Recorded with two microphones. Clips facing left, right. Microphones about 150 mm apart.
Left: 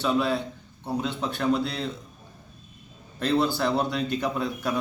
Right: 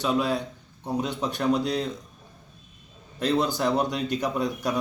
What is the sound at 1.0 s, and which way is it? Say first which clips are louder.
Speech: even; 15° right (ahead or behind).